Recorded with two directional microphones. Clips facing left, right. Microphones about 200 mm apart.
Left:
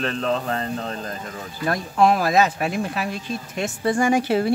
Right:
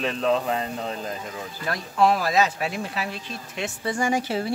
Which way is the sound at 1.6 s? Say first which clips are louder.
Left 3 dB; 50° left (ahead or behind).